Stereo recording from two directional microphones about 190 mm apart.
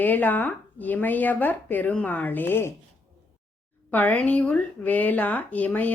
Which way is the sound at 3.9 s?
10° left (ahead or behind).